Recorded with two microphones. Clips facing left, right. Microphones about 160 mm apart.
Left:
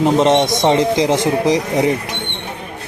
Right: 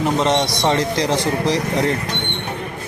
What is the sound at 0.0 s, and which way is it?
Speech, 20° left (ahead or behind).